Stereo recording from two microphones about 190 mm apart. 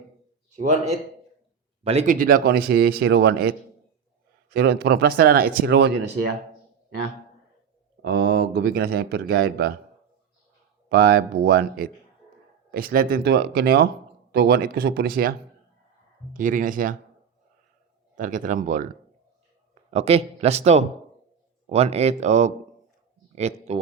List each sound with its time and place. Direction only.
1.8 s speech: 35° right (ahead or behind); by 5.9 s 55° right (ahead or behind)
8.0 s speech: 55° right (ahead or behind)
10.8 s speech: 50° right (ahead or behind)
18.2 s speech: 45° right (ahead or behind)
19.7 s a man's voice: 30° right (ahead or behind)